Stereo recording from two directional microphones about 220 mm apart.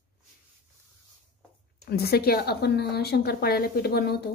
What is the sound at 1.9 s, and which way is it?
Speech, 45° left (ahead or behind).